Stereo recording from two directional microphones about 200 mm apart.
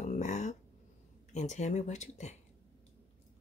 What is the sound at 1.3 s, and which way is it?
Speech, 35° left (ahead or behind).